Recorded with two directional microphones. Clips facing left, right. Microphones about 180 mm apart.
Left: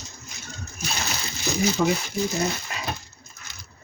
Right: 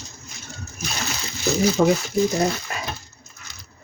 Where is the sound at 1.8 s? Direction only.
45° right (ahead or behind).